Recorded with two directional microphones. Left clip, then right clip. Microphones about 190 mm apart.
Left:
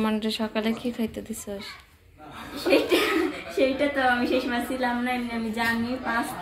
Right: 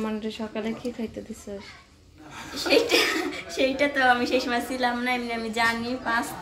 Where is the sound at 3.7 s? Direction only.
35° right (ahead or behind).